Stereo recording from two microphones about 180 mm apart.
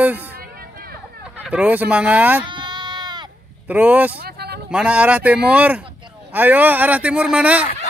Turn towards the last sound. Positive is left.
turn(degrees=-5)  # may be behind; listen again after turning